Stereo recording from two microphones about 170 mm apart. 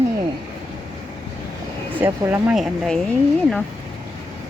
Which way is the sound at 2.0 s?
5° right (ahead or behind).